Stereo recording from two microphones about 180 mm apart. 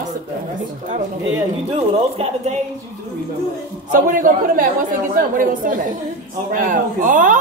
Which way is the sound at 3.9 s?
50° right (ahead or behind).